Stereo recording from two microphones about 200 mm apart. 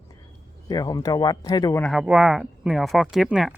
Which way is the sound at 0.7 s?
20° left (ahead or behind).